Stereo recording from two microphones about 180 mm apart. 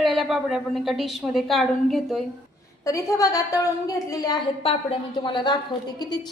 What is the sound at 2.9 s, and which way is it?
A woman's voice, 15° left (ahead or behind).